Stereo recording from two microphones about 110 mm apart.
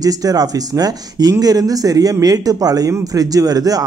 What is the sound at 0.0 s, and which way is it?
Speech, 35° right (ahead or behind).